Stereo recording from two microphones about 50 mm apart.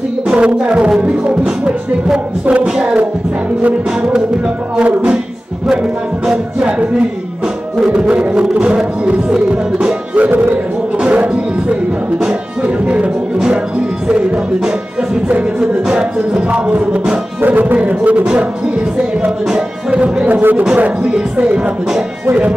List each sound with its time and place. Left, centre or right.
0.4 s music: right
4.7 s music: right
16.4 s music: right
17.4 s music: right
17.7 s music: right
19.9 s music: right
20.7 s music: right